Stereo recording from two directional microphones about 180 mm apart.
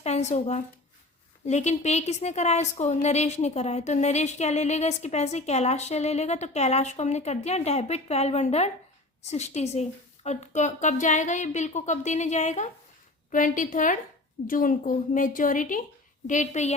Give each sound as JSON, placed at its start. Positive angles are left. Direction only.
{"t": 0.0, "sound": "a woman's voice", "side_deg": 40}